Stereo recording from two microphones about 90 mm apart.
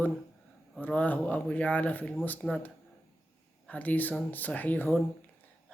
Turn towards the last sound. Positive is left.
turn(degrees=20)  # may be behind; listen again after turning